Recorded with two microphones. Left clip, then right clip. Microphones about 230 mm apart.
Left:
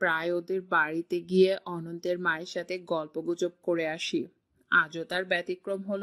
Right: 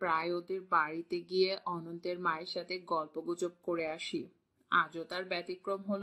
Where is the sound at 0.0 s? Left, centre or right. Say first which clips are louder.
Left 5 dB; left.